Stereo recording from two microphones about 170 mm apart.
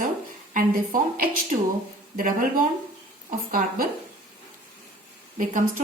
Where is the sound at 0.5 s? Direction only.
55° right (ahead or behind).